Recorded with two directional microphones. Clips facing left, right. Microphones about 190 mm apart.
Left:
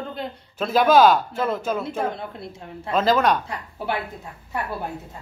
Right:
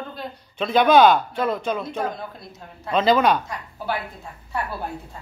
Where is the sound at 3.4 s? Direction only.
30° left (ahead or behind).